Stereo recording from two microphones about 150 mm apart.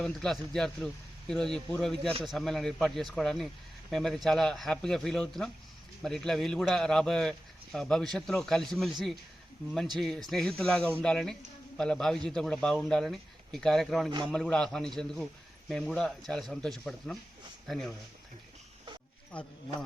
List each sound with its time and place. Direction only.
0.0 s speech: 5° left (ahead or behind)